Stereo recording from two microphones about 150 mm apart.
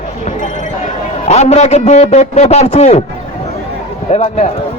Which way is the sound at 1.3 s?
45° left (ahead or behind).